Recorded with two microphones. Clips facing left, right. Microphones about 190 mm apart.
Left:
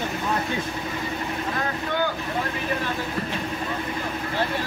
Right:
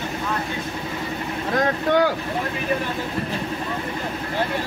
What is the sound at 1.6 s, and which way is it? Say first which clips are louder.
Speech: right 9 dB; 85° right.